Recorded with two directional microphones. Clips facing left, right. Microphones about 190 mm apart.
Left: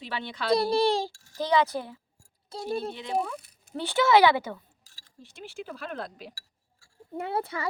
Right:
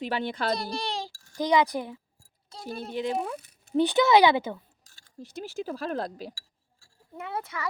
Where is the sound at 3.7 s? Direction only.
15° right (ahead or behind).